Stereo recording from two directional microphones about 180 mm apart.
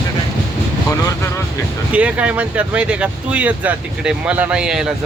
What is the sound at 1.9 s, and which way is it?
Speech, 5° right (ahead or behind).